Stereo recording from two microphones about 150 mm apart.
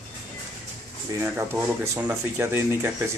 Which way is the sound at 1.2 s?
15° right (ahead or behind).